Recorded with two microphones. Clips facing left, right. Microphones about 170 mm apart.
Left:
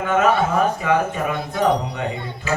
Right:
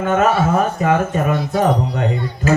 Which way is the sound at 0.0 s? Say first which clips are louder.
Right 2 dB; 40° right (ahead or behind).